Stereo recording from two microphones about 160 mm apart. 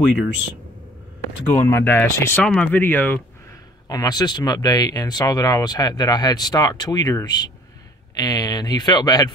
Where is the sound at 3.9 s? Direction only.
25° left (ahead or behind).